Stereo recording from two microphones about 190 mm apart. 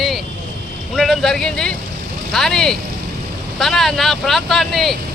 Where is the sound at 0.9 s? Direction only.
Centre (ahead or behind).